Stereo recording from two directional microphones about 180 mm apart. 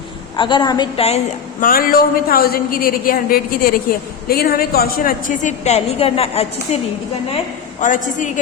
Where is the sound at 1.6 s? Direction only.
55° left (ahead or behind); by 6.8 s 35° left (ahead or behind).